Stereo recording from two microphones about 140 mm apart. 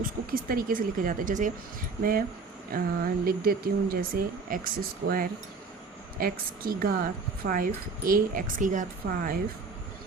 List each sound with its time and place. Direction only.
0.3 s speech: 90° right; by 1.5 s 70° right (ahead or behind)
2.0 s a woman's voice: 90° right